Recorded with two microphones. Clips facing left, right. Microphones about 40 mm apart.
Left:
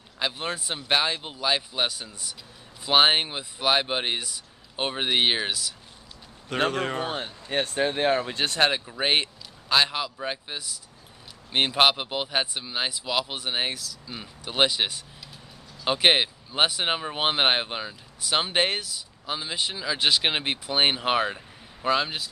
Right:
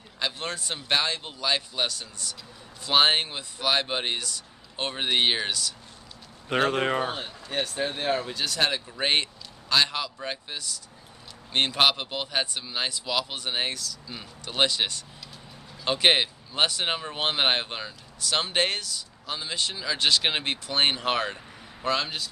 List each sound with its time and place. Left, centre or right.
0.2 s speech: centre
6.7 s speech: right
7.4 s speech: left
8.6 s speech: centre
8.9 s speech: centre